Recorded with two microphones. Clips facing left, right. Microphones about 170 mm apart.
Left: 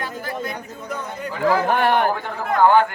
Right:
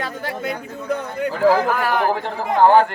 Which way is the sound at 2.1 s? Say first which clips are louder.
Right 2 dB; 30° right (ahead or behind).